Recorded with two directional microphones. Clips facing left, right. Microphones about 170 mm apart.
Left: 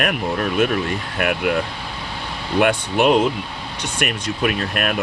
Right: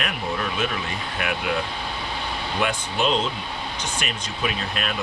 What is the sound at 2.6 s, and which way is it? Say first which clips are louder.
Speech: left 8 dB; 60° left (ahead or behind).